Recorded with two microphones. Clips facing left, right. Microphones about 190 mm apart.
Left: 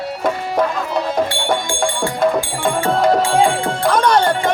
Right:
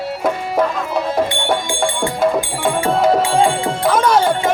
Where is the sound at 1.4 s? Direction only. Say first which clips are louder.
Even; 5° right (ahead or behind).